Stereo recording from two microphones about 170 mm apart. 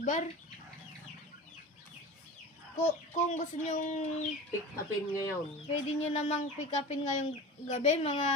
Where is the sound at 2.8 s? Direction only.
45° left (ahead or behind).